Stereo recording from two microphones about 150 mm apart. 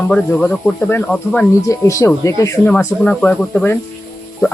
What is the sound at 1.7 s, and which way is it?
Speech, 20° left (ahead or behind).